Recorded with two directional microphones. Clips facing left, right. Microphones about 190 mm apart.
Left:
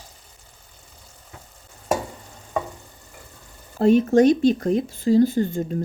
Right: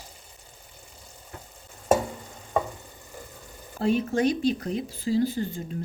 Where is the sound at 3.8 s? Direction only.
45° left (ahead or behind).